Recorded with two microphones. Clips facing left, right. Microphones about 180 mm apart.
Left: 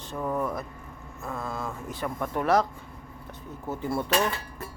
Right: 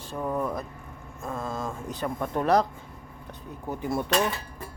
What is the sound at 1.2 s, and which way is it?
Speech, 25° right (ahead or behind).